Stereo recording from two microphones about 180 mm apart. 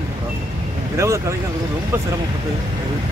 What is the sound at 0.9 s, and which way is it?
Speech, 15° right (ahead or behind).